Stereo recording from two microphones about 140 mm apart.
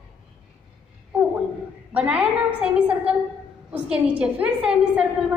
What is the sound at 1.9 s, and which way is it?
A woman's voice, 10° right (ahead or behind).